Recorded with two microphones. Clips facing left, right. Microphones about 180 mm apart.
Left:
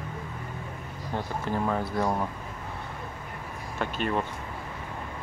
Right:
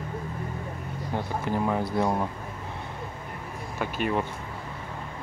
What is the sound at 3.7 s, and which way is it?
Speech, 10° right (ahead or behind).